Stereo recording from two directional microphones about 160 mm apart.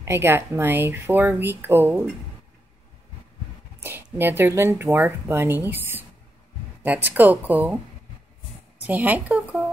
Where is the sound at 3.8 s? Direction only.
10° right (ahead or behind).